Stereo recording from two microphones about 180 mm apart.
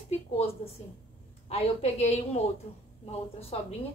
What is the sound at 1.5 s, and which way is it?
A woman's voice, 35° left (ahead or behind).